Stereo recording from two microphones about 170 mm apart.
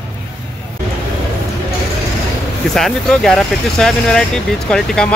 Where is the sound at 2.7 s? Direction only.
5° left (ahead or behind).